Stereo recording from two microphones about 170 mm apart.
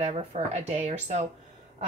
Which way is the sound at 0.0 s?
40° right (ahead or behind).